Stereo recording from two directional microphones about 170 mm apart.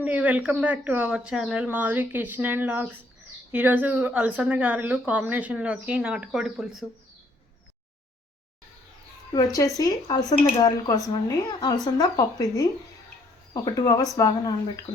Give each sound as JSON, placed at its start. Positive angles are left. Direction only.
{"t": 0.0, "sound": "speech", "side_deg": -10}
{"t": 9.3, "sound": "speech", "side_deg": 20}